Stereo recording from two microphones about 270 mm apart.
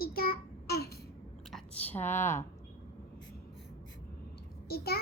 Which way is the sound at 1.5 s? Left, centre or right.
Centre.